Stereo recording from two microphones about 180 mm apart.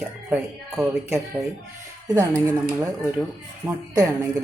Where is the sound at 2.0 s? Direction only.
15° right (ahead or behind).